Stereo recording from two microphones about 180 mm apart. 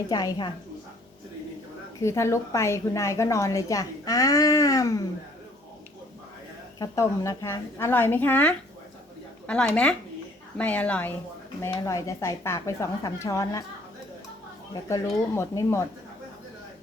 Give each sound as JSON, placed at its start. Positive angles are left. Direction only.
{"t": 0.1, "sound": "a woman's voice", "side_deg": 20}
{"t": 2.0, "sound": "a woman's voice", "side_deg": 15}
{"t": 6.7, "sound": "a woman's voice", "side_deg": 20}
{"t": 14.7, "sound": "a woman's voice", "side_deg": 20}